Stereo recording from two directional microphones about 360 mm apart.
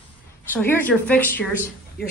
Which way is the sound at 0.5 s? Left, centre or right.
Centre.